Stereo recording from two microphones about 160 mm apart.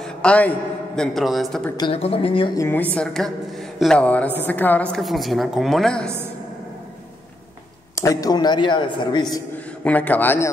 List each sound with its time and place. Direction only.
0.0 s a sound: 5° left (ahead or behind)
0.9 s a woman's voice: 5° left (ahead or behind)
1.8 s speech: 35° left (ahead or behind)
2.5 s a woman's voice: 15° left (ahead or behind)
4.9 s a woman's voice: centre (ahead or behind)
7.9 s a man's voice: 20° left (ahead or behind)
9.8 s a woman's voice: 10° left (ahead or behind)